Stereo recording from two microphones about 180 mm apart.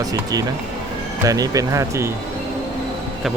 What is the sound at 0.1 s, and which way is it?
Speech, 20° right (ahead or behind).